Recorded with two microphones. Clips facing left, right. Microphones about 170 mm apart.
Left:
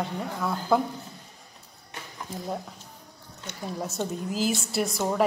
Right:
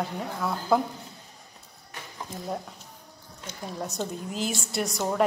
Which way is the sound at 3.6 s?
Centre (ahead or behind).